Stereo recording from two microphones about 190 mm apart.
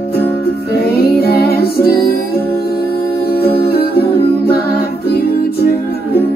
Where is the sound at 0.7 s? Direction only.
55° left (ahead or behind).